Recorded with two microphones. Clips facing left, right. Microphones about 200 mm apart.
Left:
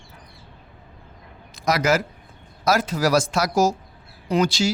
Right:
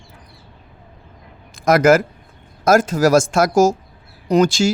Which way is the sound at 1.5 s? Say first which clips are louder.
Right 8 dB; 50° right (ahead or behind).